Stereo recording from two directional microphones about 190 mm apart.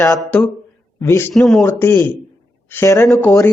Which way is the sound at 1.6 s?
10° left (ahead or behind).